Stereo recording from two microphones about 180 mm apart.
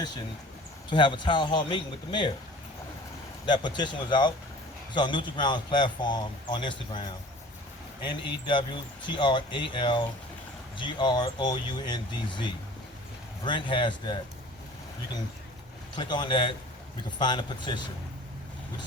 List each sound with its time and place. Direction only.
0.9 s a man's voice: 25° left (ahead or behind)
3.4 s a man's voice: 25° left (ahead or behind)
16.0 s a man's voice: 25° left (ahead or behind)